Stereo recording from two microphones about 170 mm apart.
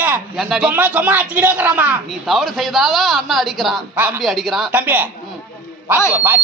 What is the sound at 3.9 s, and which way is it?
Speech, 10° right (ahead or behind).